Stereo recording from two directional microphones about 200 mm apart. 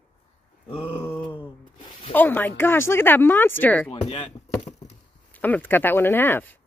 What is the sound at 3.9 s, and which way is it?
Speech, 30° left (ahead or behind).